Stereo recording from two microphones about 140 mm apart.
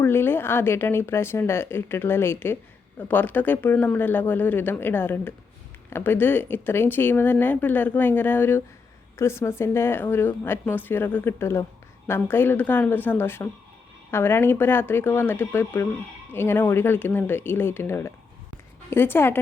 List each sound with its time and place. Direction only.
0.0 s speech: 15° left (ahead or behind)